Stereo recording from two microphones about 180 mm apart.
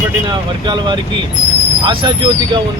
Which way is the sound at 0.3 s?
25° right (ahead or behind).